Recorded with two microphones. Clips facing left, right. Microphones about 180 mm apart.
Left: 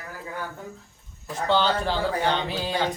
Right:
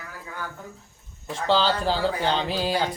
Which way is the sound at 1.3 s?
30° right (ahead or behind).